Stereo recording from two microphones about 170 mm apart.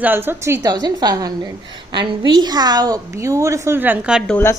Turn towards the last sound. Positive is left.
turn(degrees=-5)  # may be behind; listen again after turning